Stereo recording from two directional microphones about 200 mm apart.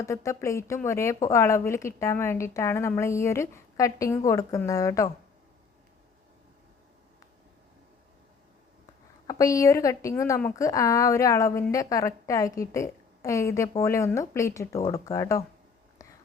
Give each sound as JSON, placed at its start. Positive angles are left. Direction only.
{"t": 0.0, "sound": "a woman's voice", "side_deg": 15}
{"t": 9.2, "sound": "a woman's voice", "side_deg": 15}